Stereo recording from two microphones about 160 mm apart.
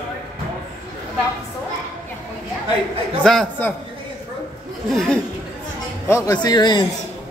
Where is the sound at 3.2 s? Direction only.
5° left (ahead or behind).